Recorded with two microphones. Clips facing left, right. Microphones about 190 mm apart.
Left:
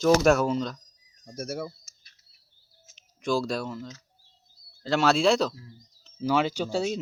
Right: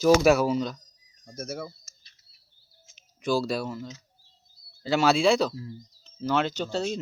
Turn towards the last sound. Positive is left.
turn(degrees=5)  # may be behind; listen again after turning